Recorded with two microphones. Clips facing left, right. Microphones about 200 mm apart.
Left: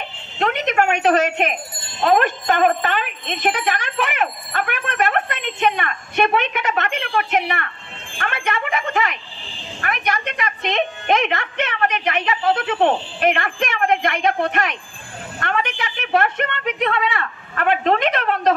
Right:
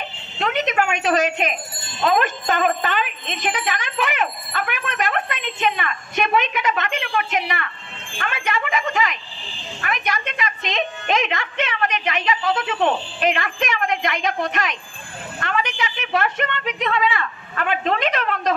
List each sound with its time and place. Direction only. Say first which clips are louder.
0.4 s a woman's voice: left 2 dB; 55° left (ahead or behind)
8.7 s a woman's voice: even; 60° left (ahead or behind)